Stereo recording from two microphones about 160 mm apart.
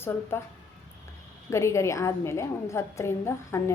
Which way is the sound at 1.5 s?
20° left (ahead or behind).